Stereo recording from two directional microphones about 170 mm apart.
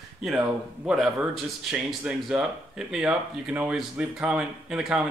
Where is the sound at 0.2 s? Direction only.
5° right (ahead or behind).